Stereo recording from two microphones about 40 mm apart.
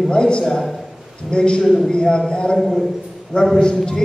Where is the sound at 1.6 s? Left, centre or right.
Centre.